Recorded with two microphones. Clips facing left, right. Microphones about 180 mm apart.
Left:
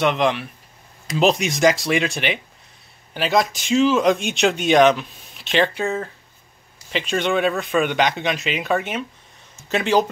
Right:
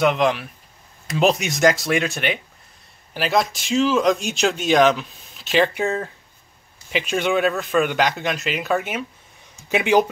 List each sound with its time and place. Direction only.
0.0 s speech: centre (ahead or behind)
5.8 s speech: 15° right (ahead or behind)